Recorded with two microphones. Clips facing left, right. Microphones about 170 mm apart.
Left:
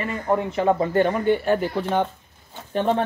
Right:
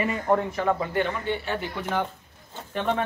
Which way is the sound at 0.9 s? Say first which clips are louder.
Left 7 dB; 45° left (ahead or behind).